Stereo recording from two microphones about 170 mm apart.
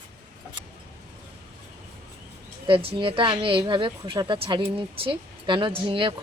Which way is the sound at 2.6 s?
30° right (ahead or behind).